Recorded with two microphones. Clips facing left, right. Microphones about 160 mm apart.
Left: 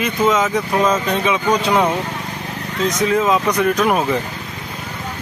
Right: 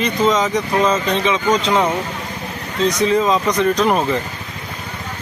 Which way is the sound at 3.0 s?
5° left (ahead or behind).